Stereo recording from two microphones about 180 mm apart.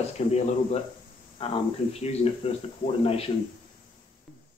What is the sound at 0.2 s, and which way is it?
Speech, 40° left (ahead or behind).